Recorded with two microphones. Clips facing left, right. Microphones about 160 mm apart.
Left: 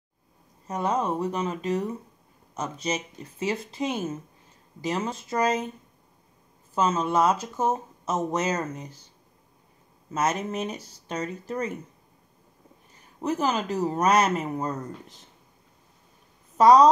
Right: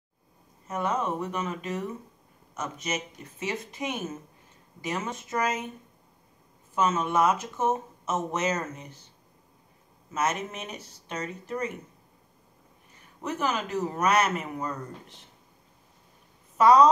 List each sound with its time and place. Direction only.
0.7 s speech: 35° left (ahead or behind)
6.7 s speech: 35° left (ahead or behind)
10.1 s speech: 35° left (ahead or behind)
13.2 s speech: 35° left (ahead or behind)
16.5 s a woman's voice: 35° left (ahead or behind)